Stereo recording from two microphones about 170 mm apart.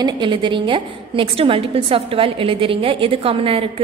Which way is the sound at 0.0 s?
30° right (ahead or behind).